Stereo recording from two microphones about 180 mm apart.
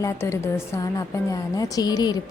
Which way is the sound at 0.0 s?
15° left (ahead or behind).